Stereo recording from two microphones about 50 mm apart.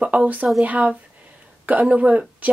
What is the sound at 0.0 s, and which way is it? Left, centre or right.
Speech, right.